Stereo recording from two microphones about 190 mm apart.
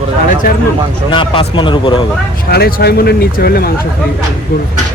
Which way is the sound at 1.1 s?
25° left (ahead or behind).